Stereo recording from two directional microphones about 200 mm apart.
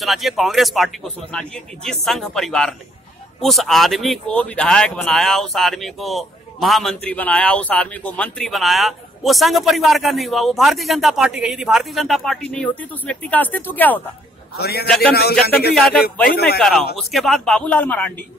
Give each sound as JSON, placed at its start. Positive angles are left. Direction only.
{"t": 0.0, "sound": "speech", "side_deg": 0}
{"t": 14.6, "sound": "speech", "side_deg": 50}
{"t": 15.7, "sound": "speech", "side_deg": 5}